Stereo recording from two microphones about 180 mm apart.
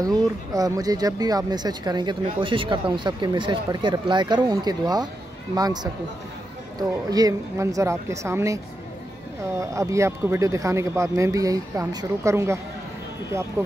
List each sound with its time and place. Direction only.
0.0 s speech: 20° right (ahead or behind)
9.6 s speech: 15° right (ahead or behind)